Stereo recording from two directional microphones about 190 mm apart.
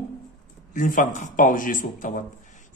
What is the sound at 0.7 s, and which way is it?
A man's voice, 45° left (ahead or behind).